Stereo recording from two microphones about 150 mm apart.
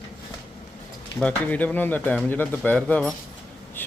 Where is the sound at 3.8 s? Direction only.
10° left (ahead or behind).